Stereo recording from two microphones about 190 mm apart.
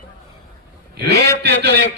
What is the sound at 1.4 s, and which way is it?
Speech, 60° right (ahead or behind).